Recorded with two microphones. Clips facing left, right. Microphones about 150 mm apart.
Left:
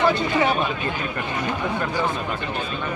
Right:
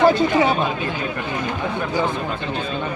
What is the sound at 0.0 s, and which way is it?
Speech, 35° right (ahead or behind).